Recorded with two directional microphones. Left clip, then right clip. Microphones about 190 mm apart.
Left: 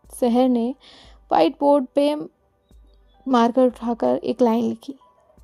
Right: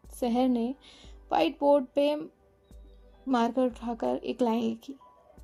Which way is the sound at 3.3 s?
50° left (ahead or behind).